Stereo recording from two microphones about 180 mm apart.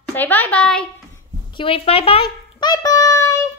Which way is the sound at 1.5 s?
30° left (ahead or behind).